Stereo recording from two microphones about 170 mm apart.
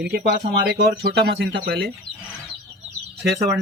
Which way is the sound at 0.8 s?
80° right.